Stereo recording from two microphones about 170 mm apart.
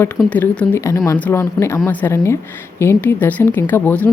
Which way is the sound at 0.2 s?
5° left (ahead or behind).